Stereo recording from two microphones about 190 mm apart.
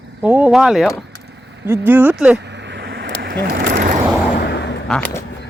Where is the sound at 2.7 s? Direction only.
60° right (ahead or behind).